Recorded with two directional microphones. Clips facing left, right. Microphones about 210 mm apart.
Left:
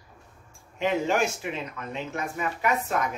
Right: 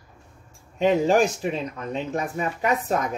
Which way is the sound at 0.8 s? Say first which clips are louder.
Right 6 dB; 35° right (ahead or behind).